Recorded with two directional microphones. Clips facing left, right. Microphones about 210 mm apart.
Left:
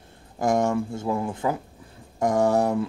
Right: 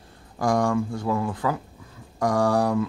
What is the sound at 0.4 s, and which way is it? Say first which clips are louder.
Speech: even; 25° left (ahead or behind).